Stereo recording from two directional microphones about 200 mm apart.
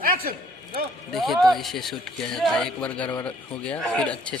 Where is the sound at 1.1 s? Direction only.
Centre (ahead or behind).